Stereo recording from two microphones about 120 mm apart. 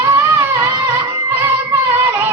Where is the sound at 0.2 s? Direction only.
20° right (ahead or behind).